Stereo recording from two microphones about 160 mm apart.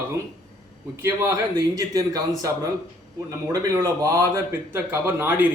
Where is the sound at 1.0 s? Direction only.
20° right (ahead or behind).